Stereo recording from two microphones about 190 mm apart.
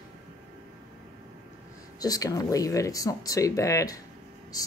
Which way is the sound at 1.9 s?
20° left (ahead or behind).